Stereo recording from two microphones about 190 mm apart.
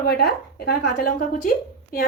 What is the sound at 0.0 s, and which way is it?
A woman's voice, 60° left (ahead or behind).